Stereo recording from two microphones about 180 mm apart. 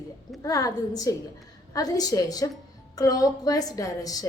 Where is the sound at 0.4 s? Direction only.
20° left (ahead or behind).